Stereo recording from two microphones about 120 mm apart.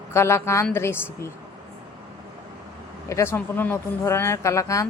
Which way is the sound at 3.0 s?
20° left (ahead or behind).